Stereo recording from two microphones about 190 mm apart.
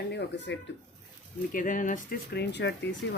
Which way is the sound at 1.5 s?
45° left (ahead or behind).